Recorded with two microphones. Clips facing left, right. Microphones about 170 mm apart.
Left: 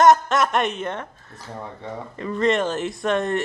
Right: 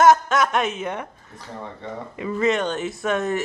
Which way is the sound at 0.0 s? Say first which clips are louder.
Even; centre (ahead or behind).